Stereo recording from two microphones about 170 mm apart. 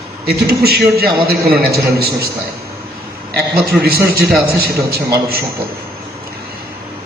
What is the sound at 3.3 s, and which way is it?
A man's voice, 65° right (ahead or behind).